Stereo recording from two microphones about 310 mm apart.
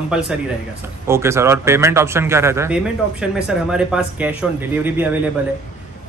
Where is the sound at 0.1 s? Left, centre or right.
Centre.